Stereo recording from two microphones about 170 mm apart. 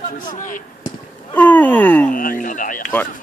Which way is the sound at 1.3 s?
10° left (ahead or behind).